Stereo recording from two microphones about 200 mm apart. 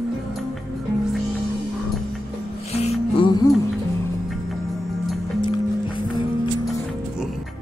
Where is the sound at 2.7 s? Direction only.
30° left (ahead or behind).